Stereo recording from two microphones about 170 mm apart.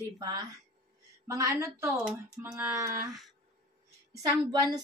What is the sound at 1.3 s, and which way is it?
Child singing, 20° right (ahead or behind).